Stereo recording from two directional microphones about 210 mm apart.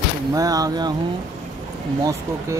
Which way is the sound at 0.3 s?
15° right (ahead or behind).